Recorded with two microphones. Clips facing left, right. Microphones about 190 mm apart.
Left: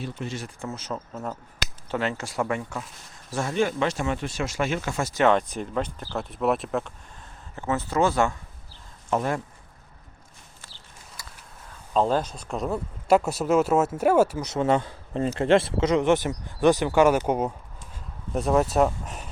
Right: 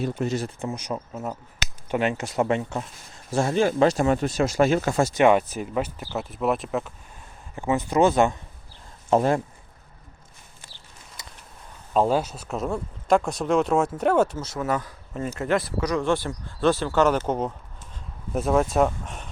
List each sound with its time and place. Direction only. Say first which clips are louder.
0.0 s speech: right 7 dB; 45° right (ahead or behind)
0.6 s speech: right 3 dB; 15° right (ahead or behind); by 5.0 s 40° right (ahead or behind)
5.0 s speech: even; 15° right (ahead or behind)
7.5 s speech: right 3 dB; 15° right (ahead or behind)
11.2 s a sound: right 1 dB; 20° right (ahead or behind)
11.9 s speech: right 1 dB; 10° right (ahead or behind); by 14.4 s 10° left (ahead or behind)
14.4 s speech: left 4 dB; 25° left (ahead or behind)
18.3 s speech: even; centre (ahead or behind)